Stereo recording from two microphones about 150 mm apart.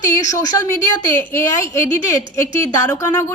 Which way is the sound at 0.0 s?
20° left (ahead or behind).